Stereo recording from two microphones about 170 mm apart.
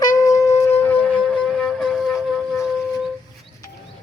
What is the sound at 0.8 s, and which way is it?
Wind instrument, 10° left (ahead or behind).